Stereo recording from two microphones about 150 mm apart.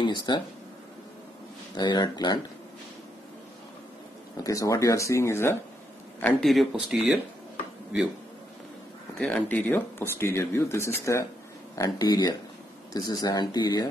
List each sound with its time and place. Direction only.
0.0 s speech: 30° left (ahead or behind)
1.8 s speech: 30° left (ahead or behind)
4.4 s speech: 20° left (ahead or behind)
6.2 s speech: centre (ahead or behind)
9.2 s speech: 10° left (ahead or behind); by 13.8 s 25° left (ahead or behind)